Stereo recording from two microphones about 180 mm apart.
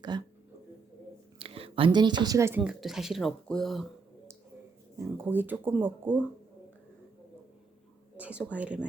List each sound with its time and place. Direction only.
0.0 s speech: 25° right (ahead or behind)
1.4 s speech: 30° right (ahead or behind)
2.6 s speech: centre (ahead or behind)
4.9 s speech: 10° right (ahead or behind)
8.1 s speech: 5° right (ahead or behind)